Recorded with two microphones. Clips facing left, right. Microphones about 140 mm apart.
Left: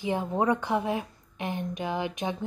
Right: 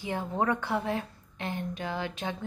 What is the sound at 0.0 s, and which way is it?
A woman's voice, 20° left (ahead or behind).